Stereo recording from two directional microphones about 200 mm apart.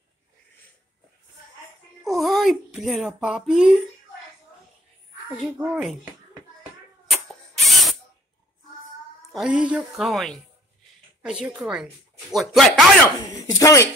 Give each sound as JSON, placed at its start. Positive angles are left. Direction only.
{"t": 2.0, "sound": "speech", "side_deg": 0}
{"t": 5.4, "sound": "speech", "side_deg": -5}
{"t": 7.1, "sound": "ratchet", "side_deg": 0}
{"t": 9.3, "sound": "speech", "side_deg": -5}
{"t": 13.5, "sound": "speech", "side_deg": 15}